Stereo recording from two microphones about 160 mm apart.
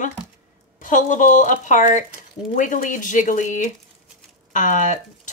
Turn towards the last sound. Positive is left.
turn(degrees=50)  # may be behind; listen again after turning